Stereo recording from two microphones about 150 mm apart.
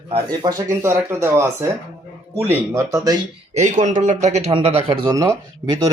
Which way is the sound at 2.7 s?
25° right (ahead or behind).